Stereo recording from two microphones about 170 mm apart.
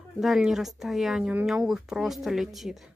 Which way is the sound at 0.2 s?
Centre (ahead or behind).